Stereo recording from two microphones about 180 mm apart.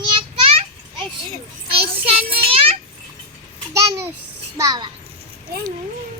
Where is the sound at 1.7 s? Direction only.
30° right (ahead or behind).